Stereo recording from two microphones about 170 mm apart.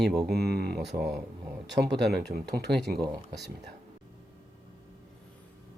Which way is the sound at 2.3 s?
75° right (ahead or behind).